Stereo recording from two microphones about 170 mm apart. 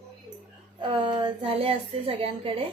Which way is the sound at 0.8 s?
30° right (ahead or behind).